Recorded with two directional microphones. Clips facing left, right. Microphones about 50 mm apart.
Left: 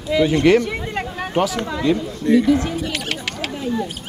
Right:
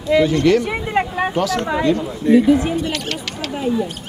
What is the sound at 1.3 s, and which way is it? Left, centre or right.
Speech, left.